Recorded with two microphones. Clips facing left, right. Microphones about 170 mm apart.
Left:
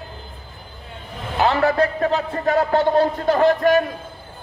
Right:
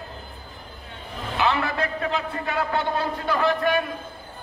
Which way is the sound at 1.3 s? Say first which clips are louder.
Left 7 dB; 40° left (ahead or behind).